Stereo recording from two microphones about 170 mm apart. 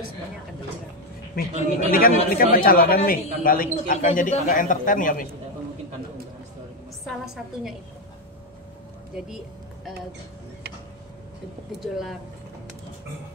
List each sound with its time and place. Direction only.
1.4 s speech: 60° left (ahead or behind)
9.1 s speech: centre (ahead or behind)
11.8 s speech: centre (ahead or behind)